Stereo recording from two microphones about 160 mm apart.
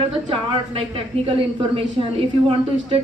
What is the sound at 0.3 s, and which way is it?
A woman's voice, 35° right (ahead or behind).